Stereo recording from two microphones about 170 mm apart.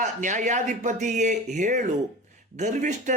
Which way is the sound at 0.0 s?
45° right (ahead or behind).